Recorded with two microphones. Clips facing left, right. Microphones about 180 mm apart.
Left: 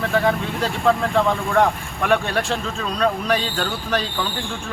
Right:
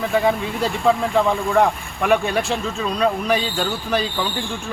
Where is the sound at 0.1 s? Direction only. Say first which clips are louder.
Right 2 dB; 5° right (ahead or behind).